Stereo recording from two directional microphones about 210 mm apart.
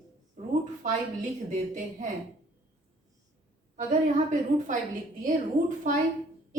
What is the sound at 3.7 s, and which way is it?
A woman's voice, 35° right (ahead or behind).